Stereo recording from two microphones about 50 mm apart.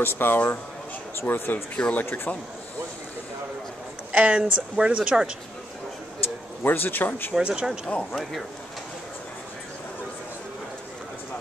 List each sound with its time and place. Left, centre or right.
0.0 s speech: left
1.8 s speech: left
2.0 s speech: left
4.1 s speech: right
6.6 s speech: left
7.3 s speech: centre